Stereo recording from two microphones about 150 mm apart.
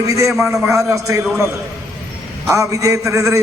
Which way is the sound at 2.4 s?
20° right (ahead or behind).